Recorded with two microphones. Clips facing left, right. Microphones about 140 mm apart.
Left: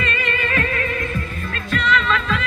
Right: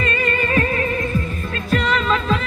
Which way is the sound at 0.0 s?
35° right (ahead or behind).